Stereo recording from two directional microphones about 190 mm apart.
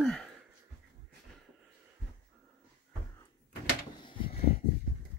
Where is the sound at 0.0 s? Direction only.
Centre (ahead or behind).